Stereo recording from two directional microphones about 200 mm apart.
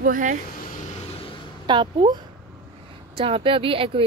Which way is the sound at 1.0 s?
30° left (ahead or behind).